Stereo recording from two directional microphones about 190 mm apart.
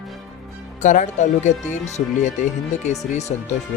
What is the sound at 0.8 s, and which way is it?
Speech, 40° left (ahead or behind).